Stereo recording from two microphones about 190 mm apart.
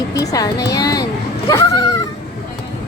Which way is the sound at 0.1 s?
15° left (ahead or behind).